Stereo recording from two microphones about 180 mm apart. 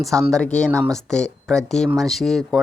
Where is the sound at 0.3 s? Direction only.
5° left (ahead or behind).